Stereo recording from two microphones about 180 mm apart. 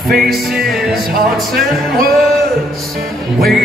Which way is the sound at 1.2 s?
55° right (ahead or behind).